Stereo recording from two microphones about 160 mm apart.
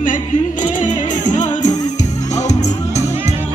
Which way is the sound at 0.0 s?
55° left (ahead or behind).